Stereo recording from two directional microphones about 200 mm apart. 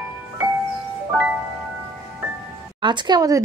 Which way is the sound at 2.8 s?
20° right (ahead or behind).